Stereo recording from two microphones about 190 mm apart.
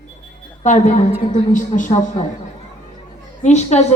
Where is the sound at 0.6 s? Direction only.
40° left (ahead or behind).